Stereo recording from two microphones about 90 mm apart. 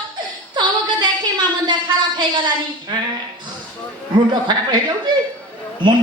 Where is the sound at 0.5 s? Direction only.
55° right (ahead or behind).